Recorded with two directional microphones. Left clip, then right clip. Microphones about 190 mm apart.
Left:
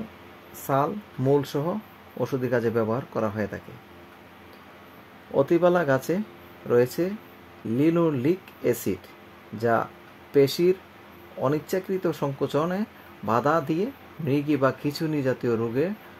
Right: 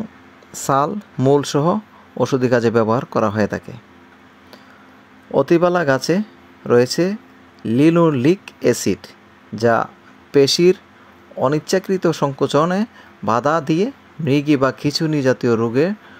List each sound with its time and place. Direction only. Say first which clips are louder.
0.7 s speech: right 7 dB; 30° right (ahead or behind)
5.3 s speech: right 6 dB; 25° right (ahead or behind)